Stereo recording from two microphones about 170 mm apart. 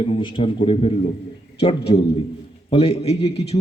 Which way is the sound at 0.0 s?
30° left (ahead or behind).